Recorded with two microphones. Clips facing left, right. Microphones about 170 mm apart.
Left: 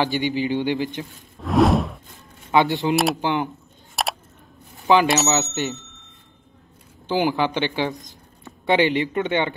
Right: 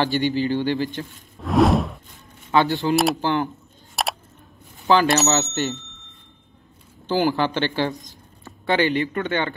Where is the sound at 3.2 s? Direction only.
15° left (ahead or behind).